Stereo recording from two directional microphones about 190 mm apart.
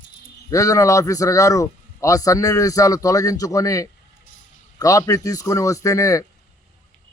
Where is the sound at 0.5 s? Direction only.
15° left (ahead or behind).